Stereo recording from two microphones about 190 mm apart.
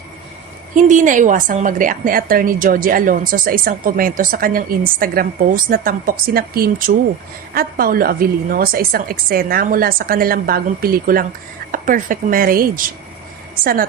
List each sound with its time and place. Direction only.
0.8 s a woman's voice: 40° right (ahead or behind)